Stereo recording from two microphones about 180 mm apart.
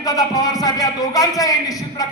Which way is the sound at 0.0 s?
20° left (ahead or behind).